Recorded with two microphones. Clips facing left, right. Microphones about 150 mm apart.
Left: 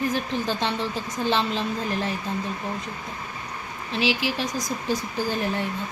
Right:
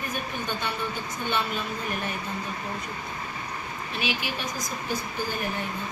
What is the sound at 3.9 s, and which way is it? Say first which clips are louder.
Speech: left 7 dB; 90° left.